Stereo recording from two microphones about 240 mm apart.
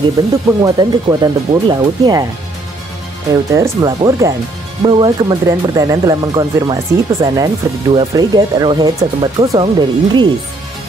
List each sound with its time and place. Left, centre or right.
0.2 s speech: centre
3.5 s speech: centre